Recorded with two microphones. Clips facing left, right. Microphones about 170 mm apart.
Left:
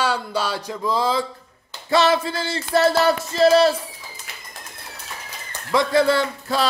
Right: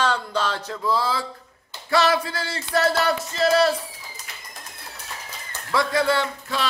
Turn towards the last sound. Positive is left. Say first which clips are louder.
# left 3 dB
turn(degrees=35)  # may be behind; listen again after turning